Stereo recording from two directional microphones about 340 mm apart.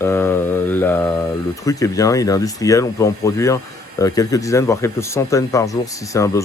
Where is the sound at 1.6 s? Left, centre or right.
Centre.